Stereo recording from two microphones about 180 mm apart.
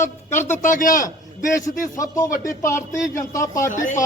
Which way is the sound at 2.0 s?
20° left (ahead or behind).